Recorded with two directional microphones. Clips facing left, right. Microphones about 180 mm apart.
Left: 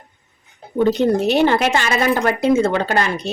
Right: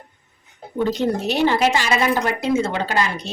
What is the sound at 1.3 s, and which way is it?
A woman's voice, 55° left (ahead or behind).